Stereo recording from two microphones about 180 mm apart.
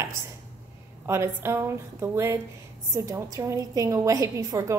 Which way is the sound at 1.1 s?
15° right (ahead or behind).